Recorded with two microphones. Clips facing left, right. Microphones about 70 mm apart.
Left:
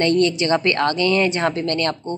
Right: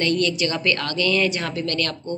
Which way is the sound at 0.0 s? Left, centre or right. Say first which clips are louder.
Left 4 dB; left.